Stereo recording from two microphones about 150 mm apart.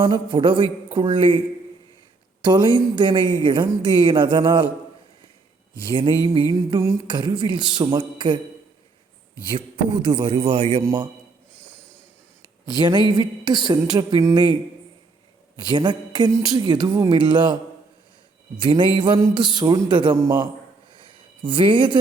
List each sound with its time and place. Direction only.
0.0 s speech: 30° right (ahead or behind)
2.4 s speech: 30° right (ahead or behind)
5.9 s a woman's voice: 35° right (ahead or behind)
7.1 s speech: 30° right (ahead or behind)
9.5 s speech: 35° right (ahead or behind)
11.6 s train: 10° left (ahead or behind)
12.4 s a sound: 30° left (ahead or behind)
13.1 s a woman's voice: 25° right (ahead or behind)
15.7 s a woman's voice: 30° right (ahead or behind)
20.9 s a sound: 35° right (ahead or behind)